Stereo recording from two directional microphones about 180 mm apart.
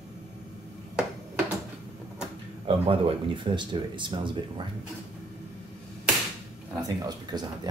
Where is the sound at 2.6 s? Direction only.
30° right (ahead or behind).